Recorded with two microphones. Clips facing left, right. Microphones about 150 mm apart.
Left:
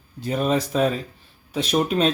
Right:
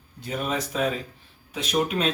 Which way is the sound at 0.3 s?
35° left (ahead or behind).